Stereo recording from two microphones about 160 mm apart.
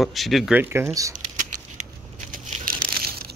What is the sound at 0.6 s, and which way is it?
Speech, 15° right (ahead or behind).